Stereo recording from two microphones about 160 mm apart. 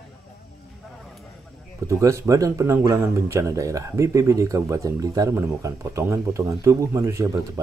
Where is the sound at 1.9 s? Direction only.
20° right (ahead or behind).